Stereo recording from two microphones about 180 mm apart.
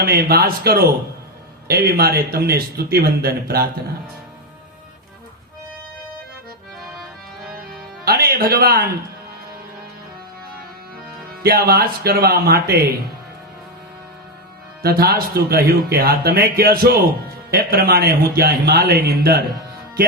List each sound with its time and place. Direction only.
0.0 s speech: 60° right (ahead or behind)
8.0 s a sound: 60° right (ahead or behind)
11.4 s speech: 60° right (ahead or behind)
14.8 s speech: 60° right (ahead or behind)